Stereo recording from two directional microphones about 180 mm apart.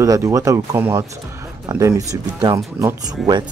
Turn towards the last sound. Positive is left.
turn(degrees=-25)  # may be behind; listen again after turning